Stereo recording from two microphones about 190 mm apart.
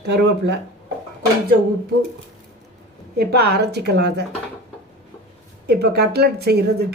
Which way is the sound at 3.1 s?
55° right (ahead or behind).